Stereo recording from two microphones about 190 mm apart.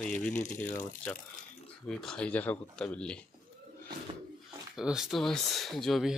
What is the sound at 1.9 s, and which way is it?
Speech, 5° left (ahead or behind).